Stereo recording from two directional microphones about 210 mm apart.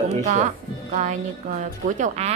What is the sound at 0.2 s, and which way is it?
Speech, 35° right (ahead or behind).